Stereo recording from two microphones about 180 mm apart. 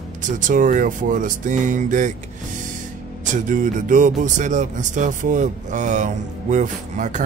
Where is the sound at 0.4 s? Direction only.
45° right (ahead or behind).